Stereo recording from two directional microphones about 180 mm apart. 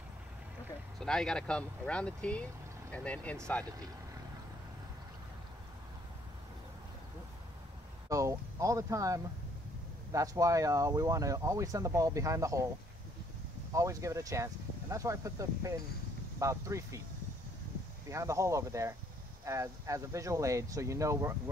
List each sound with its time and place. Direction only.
0.9 s speech: 5° left (ahead or behind)
8.1 s speech: 20° right (ahead or behind)
13.7 s speech: 15° right (ahead or behind)
18.1 s speech: 15° right (ahead or behind)